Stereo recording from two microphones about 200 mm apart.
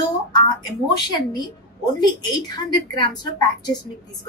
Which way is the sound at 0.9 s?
20° left (ahead or behind).